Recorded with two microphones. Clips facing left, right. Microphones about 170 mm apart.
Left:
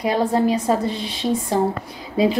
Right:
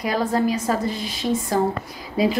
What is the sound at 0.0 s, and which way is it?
A woman's voice, 30° left (ahead or behind).